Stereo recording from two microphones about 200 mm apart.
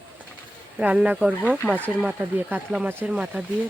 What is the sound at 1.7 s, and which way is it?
Speech, 5° left (ahead or behind).